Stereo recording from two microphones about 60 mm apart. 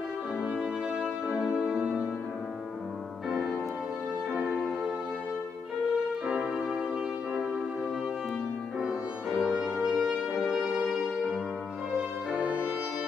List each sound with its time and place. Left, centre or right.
0.6 s music: centre
3.3 s music: centre
6.3 s music: centre
8.8 s music: centre
12.3 s music: right